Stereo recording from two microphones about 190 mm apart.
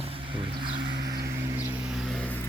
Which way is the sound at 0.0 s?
30° right (ahead or behind).